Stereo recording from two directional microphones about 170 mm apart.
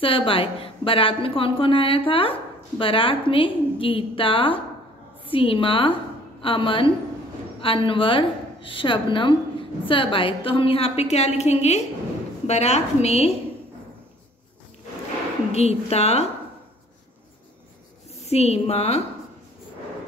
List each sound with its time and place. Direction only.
0.0 s a woman's voice: 30° left (ahead or behind)
15.5 s a woman's voice: 40° left (ahead or behind)
18.2 s a woman's voice: 40° left (ahead or behind)